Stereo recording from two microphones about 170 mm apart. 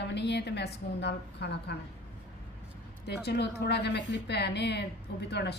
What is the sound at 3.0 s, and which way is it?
A woman's voice, 80° left.